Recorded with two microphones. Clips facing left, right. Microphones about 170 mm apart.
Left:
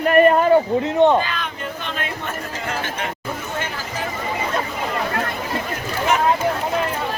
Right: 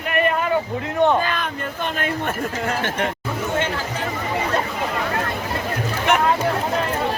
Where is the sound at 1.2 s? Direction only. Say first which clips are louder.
Right 2 dB; 45° right (ahead or behind).